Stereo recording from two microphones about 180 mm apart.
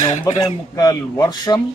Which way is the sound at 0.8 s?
20° left (ahead or behind).